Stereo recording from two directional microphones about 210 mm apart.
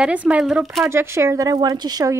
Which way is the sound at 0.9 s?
10° right (ahead or behind).